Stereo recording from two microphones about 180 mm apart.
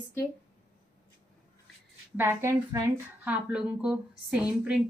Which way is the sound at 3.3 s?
5° right (ahead or behind).